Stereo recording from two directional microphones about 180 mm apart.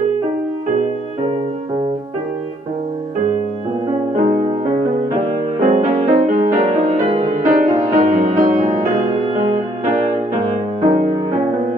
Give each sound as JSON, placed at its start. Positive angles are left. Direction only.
{"t": 5.7, "sound": "music", "side_deg": -40}
{"t": 7.4, "sound": "music", "side_deg": -20}
{"t": 7.8, "sound": "music", "side_deg": -45}
{"t": 10.9, "sound": "music", "side_deg": -45}